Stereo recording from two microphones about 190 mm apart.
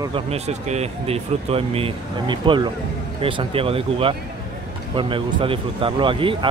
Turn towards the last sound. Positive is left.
turn(degrees=-25)  # may be behind; listen again after turning